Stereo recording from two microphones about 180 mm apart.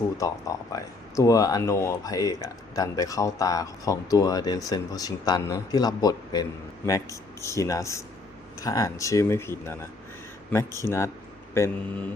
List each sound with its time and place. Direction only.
0.2 s speech: 20° left (ahead or behind)